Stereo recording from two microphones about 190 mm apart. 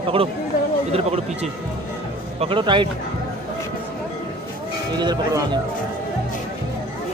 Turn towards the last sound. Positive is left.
turn(degrees=-20)  # may be behind; listen again after turning